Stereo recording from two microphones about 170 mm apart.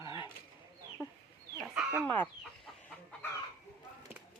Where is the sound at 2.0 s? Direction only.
10° left (ahead or behind).